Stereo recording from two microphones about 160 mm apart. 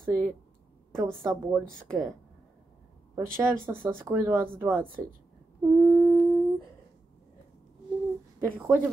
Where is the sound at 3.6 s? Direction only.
15° right (ahead or behind).